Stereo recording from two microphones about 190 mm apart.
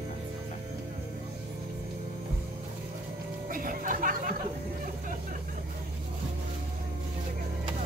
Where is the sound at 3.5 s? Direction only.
45° right (ahead or behind).